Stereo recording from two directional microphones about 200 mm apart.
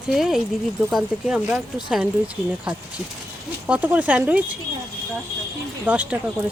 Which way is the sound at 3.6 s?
5° right (ahead or behind).